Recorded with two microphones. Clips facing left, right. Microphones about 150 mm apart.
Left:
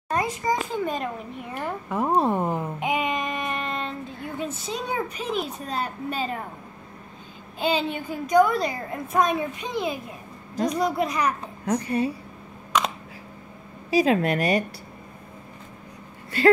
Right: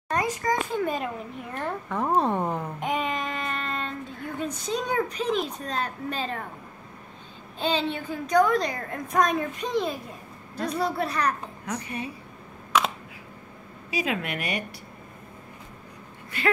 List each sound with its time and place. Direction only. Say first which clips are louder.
0.1 s a sound: left 1 dB; 10° left (ahead or behind)
0.8 s speech: even; centre (ahead or behind)
1.5 s babbling: left 1 dB; 10° left (ahead or behind)
4.6 s a woman's voice: right 4 dB; 5° left (ahead or behind)
7.5 s a woman's voice: left 2 dB; 10° left (ahead or behind)
11.6 s a woman's voice: left 10 dB; 35° left (ahead or behind)
12.7 s computer keyboard: even; 5° right (ahead or behind)
13.8 s a woman's voice: left 9 dB; 35° left (ahead or behind)